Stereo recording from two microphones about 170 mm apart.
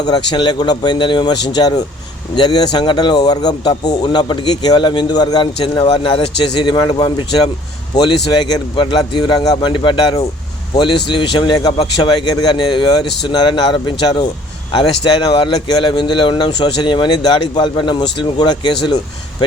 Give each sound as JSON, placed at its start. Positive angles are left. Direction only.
{"t": 0.0, "sound": "speech", "side_deg": 25}